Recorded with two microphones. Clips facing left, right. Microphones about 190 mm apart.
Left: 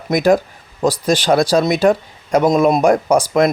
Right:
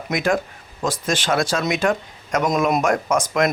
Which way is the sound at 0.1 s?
40° left (ahead or behind).